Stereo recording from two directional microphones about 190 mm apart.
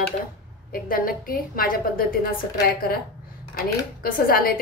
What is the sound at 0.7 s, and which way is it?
A woman's voice, 50° left (ahead or behind).